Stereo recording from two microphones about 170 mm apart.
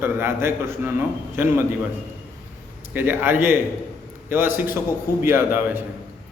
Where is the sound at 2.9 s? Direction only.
10° right (ahead or behind).